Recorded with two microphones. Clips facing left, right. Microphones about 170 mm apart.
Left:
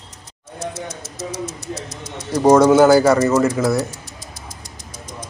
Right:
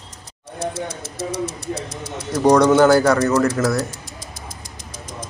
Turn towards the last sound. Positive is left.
turn(degrees=0)  # may be behind; listen again after turning